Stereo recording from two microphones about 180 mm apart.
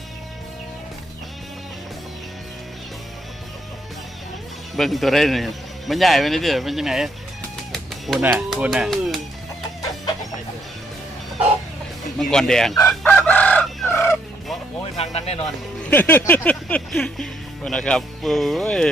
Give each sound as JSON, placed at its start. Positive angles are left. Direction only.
{"t": 4.8, "sound": "a man's voice", "side_deg": 0}
{"t": 7.7, "sound": "music", "side_deg": 0}
{"t": 8.3, "sound": "a man's voice", "side_deg": 0}
{"t": 12.2, "sound": "a man's voice", "side_deg": 5}
{"t": 12.9, "sound": "chicken", "side_deg": 5}
{"t": 14.9, "sound": "speech", "side_deg": 35}
{"t": 15.9, "sound": "speech", "side_deg": 10}